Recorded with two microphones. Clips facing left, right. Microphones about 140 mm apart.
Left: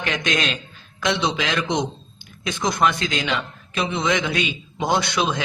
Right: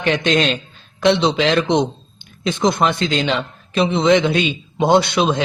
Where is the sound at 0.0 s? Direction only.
30° right (ahead or behind).